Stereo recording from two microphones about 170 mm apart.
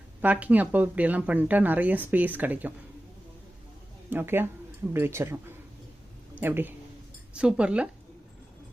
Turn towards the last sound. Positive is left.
turn(degrees=-5)  # may be behind; listen again after turning